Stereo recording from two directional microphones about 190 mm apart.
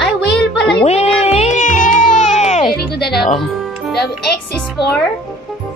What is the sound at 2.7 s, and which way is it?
Speech, 55° left (ahead or behind).